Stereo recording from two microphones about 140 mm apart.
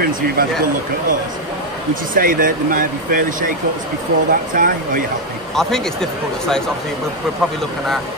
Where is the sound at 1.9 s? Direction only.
85° right.